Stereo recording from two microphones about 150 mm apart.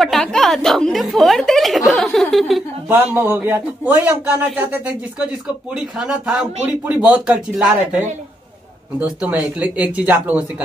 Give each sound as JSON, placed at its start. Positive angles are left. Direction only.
{"t": 0.0, "sound": "a woman's voice", "side_deg": 0}
{"t": 1.9, "sound": "a sound", "side_deg": 0}
{"t": 2.9, "sound": "a man's voice", "side_deg": -15}